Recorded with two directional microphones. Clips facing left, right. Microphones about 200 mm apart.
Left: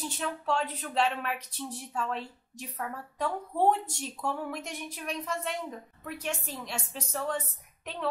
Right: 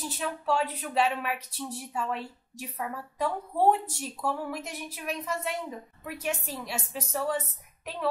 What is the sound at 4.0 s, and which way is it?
A woman's voice, 5° right (ahead or behind).